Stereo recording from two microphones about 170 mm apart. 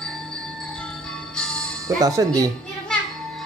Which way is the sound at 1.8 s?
20° right (ahead or behind).